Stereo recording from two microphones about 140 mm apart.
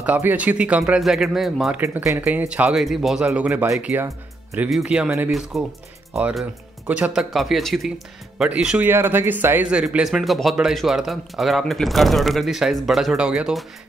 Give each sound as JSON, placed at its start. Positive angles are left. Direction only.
{"t": 0.0, "sound": "speech", "side_deg": -10}
{"t": 1.8, "sound": "speech", "side_deg": -15}